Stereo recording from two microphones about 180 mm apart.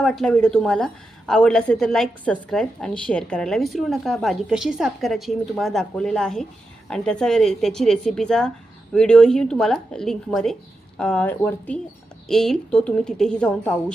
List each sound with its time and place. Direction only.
0.0 s a woman's voice: 5° left (ahead or behind)